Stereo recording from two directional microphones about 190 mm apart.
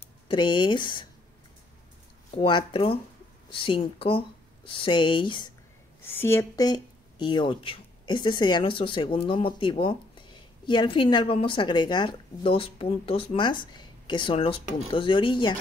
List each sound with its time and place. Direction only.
0.3 s speech: 25° left (ahead or behind)
2.3 s speech: 25° left (ahead or behind)
6.0 s speech: 10° left (ahead or behind)